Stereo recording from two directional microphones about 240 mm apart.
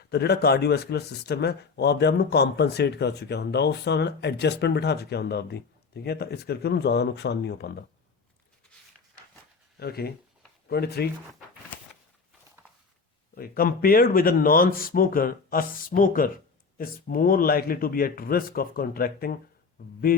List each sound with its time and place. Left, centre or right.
0.1 s speech: left
9.8 s speech: left
13.3 s speech: left
20.1 s a sound: left